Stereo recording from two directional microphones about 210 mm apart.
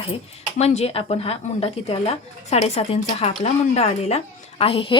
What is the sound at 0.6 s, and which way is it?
Speech, 30° left (ahead or behind).